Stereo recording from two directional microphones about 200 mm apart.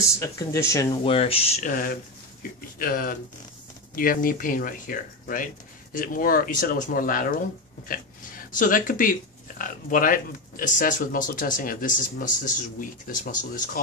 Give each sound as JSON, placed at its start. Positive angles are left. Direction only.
{"t": 0.2, "sound": "speech", "side_deg": 15}
{"t": 1.0, "sound": "speech", "side_deg": 30}